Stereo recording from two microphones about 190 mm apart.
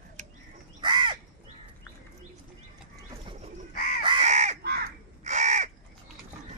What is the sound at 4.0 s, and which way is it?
Crow, 30° right (ahead or behind).